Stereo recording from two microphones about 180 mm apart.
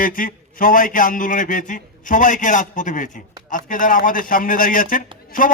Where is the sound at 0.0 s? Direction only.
50° left (ahead or behind).